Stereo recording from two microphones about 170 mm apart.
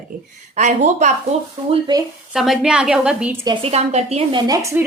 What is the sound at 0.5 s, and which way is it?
Speech, 45° right (ahead or behind).